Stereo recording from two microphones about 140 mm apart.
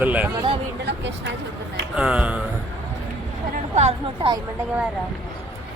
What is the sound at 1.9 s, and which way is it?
Speech, 5° right (ahead or behind).